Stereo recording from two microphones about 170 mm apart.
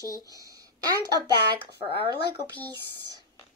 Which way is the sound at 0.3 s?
20° right (ahead or behind).